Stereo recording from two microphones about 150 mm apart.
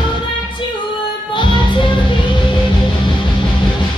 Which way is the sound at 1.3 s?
35° left (ahead or behind).